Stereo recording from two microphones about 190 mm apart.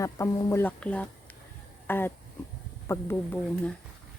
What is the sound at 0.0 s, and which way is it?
A woman's voice, 15° left (ahead or behind).